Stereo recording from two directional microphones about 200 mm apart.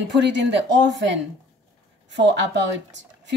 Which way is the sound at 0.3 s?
60° right (ahead or behind).